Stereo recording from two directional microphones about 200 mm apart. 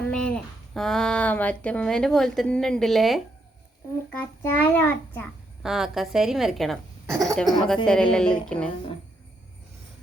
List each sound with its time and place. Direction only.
0.0 s speech: 5° left (ahead or behind)
4.2 s a child's voice: 10° left (ahead or behind)
5.6 s speech: centre (ahead or behind)
7.5 s speech: 20° right (ahead or behind)
7.9 s speech: 5° left (ahead or behind)